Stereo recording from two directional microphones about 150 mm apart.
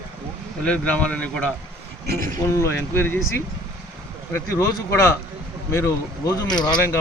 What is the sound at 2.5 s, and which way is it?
A man's voice, 15° left (ahead or behind).